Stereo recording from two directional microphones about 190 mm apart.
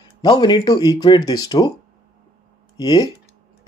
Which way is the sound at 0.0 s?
25° left (ahead or behind).